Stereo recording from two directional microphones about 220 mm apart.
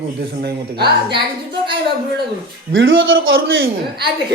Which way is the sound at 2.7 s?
60° right (ahead or behind).